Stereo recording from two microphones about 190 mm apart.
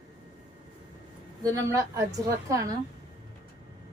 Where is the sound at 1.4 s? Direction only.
20° right (ahead or behind).